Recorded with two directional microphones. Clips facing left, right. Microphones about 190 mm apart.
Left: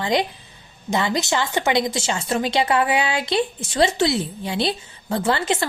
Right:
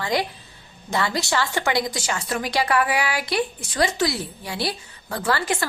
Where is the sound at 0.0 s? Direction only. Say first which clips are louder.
Left 3 dB; 20° left (ahead or behind).